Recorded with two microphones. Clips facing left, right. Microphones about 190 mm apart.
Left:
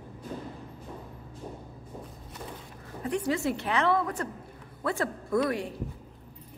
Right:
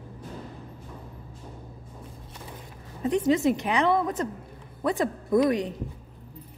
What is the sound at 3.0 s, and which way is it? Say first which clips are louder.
A woman's voice: right 6 dB; 20° right (ahead or behind).